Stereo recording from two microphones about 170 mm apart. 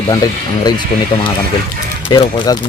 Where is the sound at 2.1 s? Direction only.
20° left (ahead or behind).